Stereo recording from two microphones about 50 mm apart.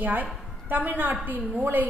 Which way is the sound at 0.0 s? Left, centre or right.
Right.